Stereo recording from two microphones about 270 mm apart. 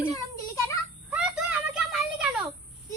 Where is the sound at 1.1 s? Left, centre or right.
Centre.